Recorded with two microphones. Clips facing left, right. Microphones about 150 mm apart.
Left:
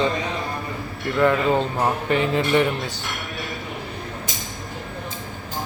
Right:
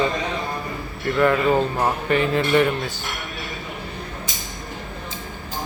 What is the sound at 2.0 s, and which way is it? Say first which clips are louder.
Speech: right 1 dB; 20° left (ahead or behind).